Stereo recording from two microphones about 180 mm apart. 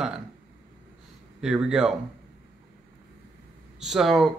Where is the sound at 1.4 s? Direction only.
5° right (ahead or behind).